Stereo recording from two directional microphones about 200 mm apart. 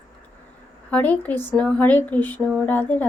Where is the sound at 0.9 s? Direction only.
5° left (ahead or behind).